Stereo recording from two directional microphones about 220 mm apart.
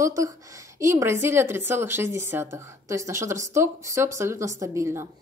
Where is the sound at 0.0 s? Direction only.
15° right (ahead or behind).